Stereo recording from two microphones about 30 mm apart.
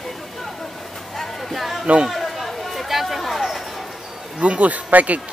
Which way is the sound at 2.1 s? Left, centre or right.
Centre.